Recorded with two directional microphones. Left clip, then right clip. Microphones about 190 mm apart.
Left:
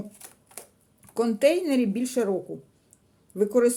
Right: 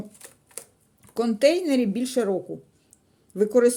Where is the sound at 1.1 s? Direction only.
5° right (ahead or behind).